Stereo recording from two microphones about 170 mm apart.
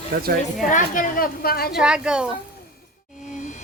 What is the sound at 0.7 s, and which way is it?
A woman's voice, 50° left (ahead or behind).